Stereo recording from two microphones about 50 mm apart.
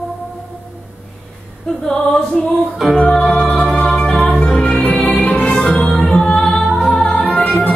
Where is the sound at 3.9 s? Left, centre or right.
Centre.